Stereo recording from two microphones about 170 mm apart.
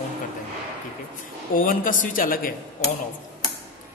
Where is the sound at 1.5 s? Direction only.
55° left (ahead or behind).